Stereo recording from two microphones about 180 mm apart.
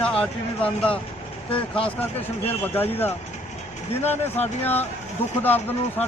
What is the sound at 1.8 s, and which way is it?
Speech, 30° left (ahead or behind).